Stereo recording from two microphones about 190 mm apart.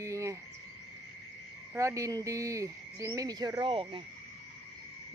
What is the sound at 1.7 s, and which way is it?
Speech, 15° right (ahead or behind).